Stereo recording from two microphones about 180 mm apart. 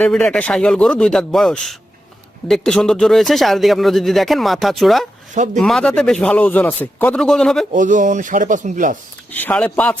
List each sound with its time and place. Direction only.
0.0 s speech: 5° left (ahead or behind)
7.7 s speech: 45° right (ahead or behind)
9.3 s speech: 10° left (ahead or behind)